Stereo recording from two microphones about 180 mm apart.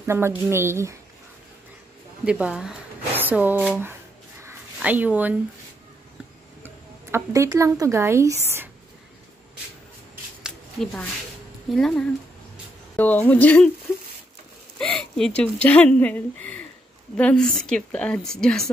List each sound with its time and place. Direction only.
0.0 s a woman's voice: 15° right (ahead or behind)
2.2 s a woman's voice: 5° right (ahead or behind)
4.4 s a sound: 10° right (ahead or behind)
6.6 s speech: 10° right (ahead or behind)
10.4 s a sound: centre (ahead or behind)
11.7 s a woman's voice: centre (ahead or behind)
12.9 s speech: 10° left (ahead or behind)
14.8 s a woman's voice: 5° left (ahead or behind)